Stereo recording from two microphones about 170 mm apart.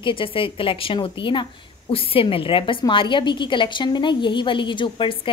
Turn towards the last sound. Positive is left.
turn(degrees=30)  # may be behind; listen again after turning